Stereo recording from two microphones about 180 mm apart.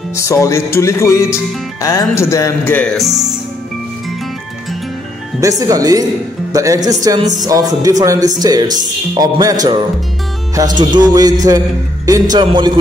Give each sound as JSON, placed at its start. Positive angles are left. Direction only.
{"t": 0.1, "sound": "music", "side_deg": 15}
{"t": 5.4, "sound": "speech", "side_deg": -20}
{"t": 10.8, "sound": "speech", "side_deg": -25}